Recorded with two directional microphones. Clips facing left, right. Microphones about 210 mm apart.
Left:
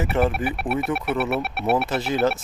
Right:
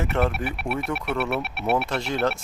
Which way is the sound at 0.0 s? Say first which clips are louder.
Left 3 dB; 5° left (ahead or behind).